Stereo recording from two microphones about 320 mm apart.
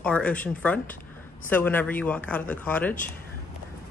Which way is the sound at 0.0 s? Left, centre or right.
Centre.